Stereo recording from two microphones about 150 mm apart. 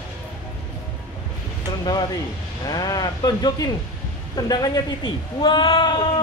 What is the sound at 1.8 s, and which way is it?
Speech, 30° left (ahead or behind).